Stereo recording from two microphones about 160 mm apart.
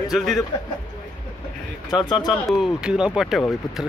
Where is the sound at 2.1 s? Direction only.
25° left (ahead or behind).